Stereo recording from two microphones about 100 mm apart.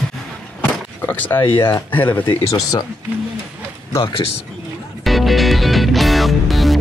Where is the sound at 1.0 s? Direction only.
20° left (ahead or behind).